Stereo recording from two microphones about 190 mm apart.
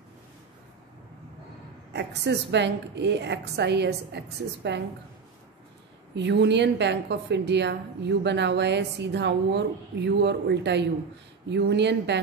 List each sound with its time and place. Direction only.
1.9 s a woman's voice: 65° right (ahead or behind)
6.1 s a woman's voice: 65° right (ahead or behind)